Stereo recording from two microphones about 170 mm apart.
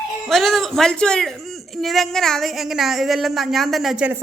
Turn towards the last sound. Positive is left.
turn(degrees=-5)  # may be behind; listen again after turning